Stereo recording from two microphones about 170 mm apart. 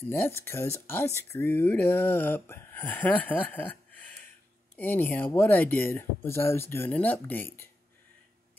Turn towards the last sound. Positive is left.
turn(degrees=10)  # may be behind; listen again after turning